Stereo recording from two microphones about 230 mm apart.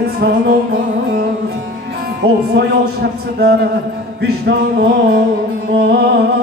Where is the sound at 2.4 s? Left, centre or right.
Right.